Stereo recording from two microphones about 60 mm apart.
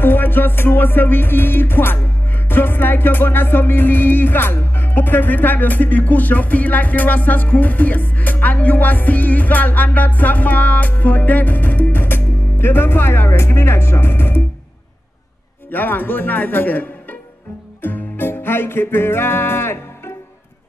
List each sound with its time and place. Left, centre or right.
0.0 s music: left
15.7 s music: left